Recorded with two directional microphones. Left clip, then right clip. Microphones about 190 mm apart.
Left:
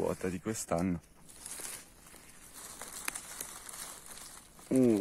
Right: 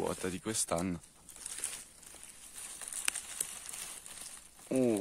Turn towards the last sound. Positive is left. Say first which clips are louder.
# left 3 dB
turn(degrees=-5)  # may be behind; listen again after turning